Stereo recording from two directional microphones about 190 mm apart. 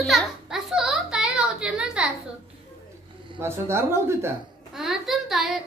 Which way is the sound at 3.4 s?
15° right (ahead or behind).